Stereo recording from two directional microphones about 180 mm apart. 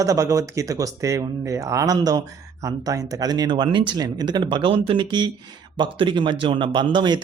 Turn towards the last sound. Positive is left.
turn(degrees=-25)  # may be behind; listen again after turning